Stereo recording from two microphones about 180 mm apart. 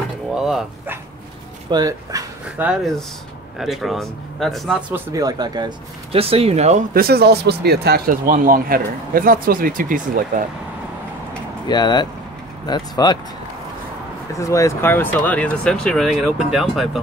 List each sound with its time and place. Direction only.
0.3 s dog: centre (ahead or behind)
1.7 s speech: 20° right (ahead or behind)
2.4 s speech: 5° right (ahead or behind)
4.9 s speech: 20° right (ahead or behind); by 10.4 s 50° right (ahead or behind)
11.6 s speech: 25° left (ahead or behind)
14.4 s speech: 15° left (ahead or behind); by 17.0 s centre (ahead or behind)